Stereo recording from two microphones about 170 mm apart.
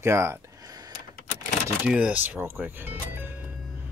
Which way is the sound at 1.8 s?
5° right (ahead or behind).